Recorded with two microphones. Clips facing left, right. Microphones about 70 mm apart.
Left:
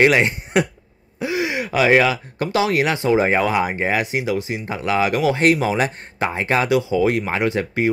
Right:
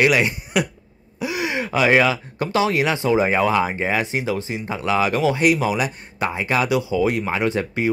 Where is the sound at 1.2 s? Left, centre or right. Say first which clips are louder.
Left 2 dB; left.